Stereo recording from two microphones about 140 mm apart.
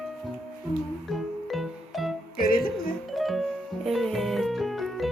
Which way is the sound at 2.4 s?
90° left.